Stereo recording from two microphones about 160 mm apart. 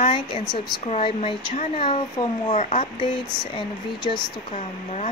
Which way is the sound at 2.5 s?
50° left (ahead or behind).